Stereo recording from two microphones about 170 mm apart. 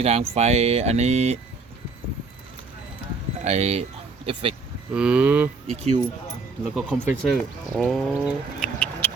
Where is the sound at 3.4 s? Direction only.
40° right (ahead or behind).